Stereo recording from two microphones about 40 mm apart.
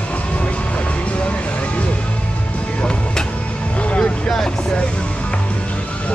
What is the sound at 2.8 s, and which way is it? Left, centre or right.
Music, left.